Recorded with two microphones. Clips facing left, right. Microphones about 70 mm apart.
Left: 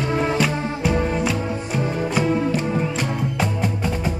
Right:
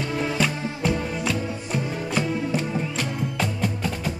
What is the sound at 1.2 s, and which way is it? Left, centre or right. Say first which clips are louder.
Music: left 4 dB; centre.